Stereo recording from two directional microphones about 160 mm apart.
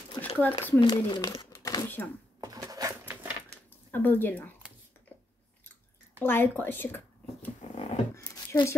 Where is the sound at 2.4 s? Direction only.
25° right (ahead or behind).